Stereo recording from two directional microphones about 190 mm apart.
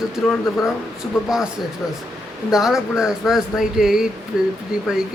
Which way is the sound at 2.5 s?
Centre (ahead or behind).